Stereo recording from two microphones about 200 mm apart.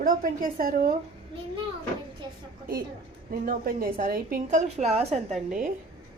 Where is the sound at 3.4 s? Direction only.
45° right (ahead or behind).